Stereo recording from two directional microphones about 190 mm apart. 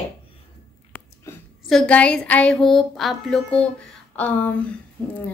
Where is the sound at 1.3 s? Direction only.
15° left (ahead or behind).